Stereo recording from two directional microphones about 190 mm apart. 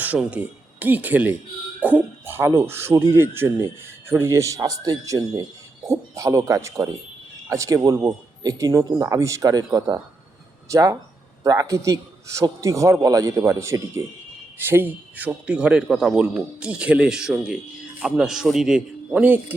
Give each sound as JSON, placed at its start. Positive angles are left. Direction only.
{"t": 0.0, "sound": "a man's voice", "side_deg": -5}